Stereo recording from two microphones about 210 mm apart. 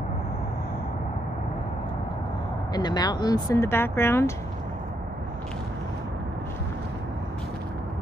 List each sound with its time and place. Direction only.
2.7 s speech: 20° left (ahead or behind)